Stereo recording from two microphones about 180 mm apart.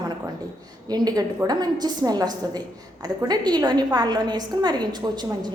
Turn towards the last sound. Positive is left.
turn(degrees=-25)  # may be behind; listen again after turning